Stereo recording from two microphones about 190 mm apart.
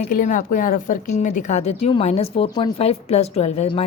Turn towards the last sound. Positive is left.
turn(degrees=35)  # may be behind; listen again after turning